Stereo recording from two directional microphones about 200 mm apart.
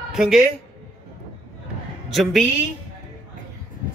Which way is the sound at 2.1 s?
Centre (ahead or behind).